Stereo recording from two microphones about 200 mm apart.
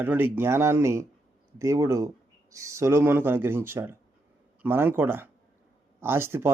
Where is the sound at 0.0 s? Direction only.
10° right (ahead or behind).